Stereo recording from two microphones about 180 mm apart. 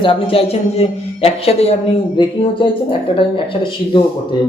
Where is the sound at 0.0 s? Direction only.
30° left (ahead or behind).